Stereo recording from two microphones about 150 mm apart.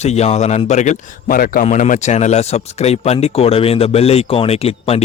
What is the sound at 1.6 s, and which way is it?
A man's voice, 55° left (ahead or behind).